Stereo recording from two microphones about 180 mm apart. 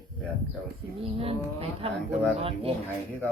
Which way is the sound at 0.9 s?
30° right (ahead or behind).